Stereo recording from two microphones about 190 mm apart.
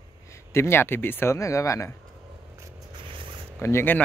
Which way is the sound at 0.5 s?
15° left (ahead or behind).